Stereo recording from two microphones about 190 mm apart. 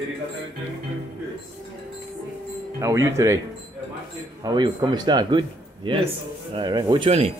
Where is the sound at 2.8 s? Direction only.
15° right (ahead or behind).